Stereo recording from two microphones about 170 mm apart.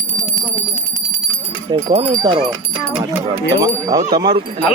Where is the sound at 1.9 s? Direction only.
45° right (ahead or behind).